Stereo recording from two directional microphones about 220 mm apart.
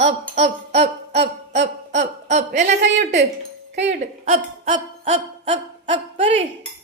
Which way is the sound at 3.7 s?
55° right (ahead or behind).